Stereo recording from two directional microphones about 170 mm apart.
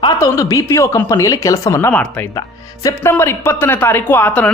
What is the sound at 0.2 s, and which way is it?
Speech, 20° left (ahead or behind).